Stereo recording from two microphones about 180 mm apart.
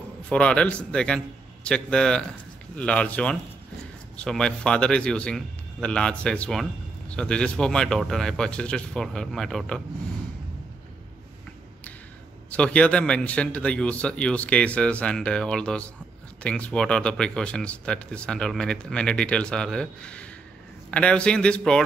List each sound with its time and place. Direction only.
0.3 s a man's voice: 5° left (ahead or behind)
12.4 s a man's voice: 5° left (ahead or behind)